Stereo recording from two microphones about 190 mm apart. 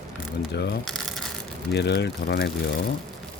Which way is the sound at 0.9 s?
Centre (ahead or behind).